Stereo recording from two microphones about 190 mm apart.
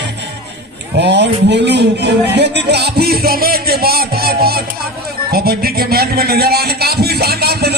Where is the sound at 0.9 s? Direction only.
65° right (ahead or behind).